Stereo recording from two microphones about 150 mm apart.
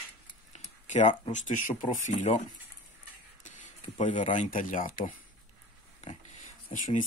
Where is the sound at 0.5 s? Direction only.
50° left (ahead or behind).